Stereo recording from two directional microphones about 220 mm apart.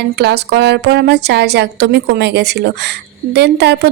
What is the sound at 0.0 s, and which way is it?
A woman's voice, 50° right (ahead or behind).